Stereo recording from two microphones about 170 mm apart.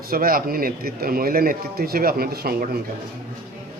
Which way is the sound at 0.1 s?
60° right (ahead or behind).